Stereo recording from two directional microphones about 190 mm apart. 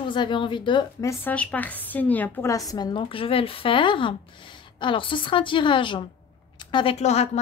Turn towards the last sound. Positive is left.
turn(degrees=35)  # may be behind; listen again after turning